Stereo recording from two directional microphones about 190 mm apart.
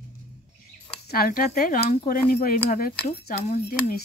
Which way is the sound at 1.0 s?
50° left (ahead or behind).